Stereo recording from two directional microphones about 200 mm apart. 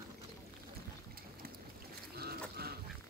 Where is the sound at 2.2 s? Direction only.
50° right (ahead or behind).